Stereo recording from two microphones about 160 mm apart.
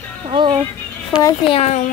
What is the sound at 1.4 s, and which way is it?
Speech, 40° left (ahead or behind).